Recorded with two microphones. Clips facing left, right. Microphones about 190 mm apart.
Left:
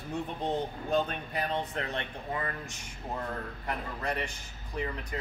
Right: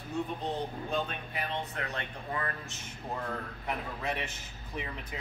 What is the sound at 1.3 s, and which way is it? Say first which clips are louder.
Speech: left 4 dB; 25° left (ahead or behind).